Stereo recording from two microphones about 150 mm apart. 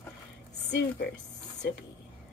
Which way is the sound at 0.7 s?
90° left.